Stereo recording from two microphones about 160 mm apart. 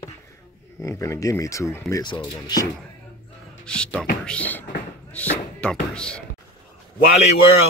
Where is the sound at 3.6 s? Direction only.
5° left (ahead or behind).